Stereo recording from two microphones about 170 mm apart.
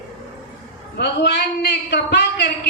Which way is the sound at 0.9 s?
80° left.